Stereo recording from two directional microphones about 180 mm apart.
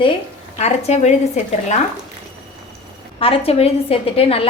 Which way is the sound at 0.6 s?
35° left (ahead or behind).